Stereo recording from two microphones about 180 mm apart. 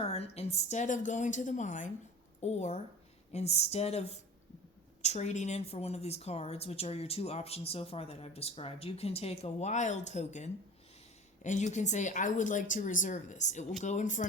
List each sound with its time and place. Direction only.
0.0 s a woman's voice: 35° left (ahead or behind)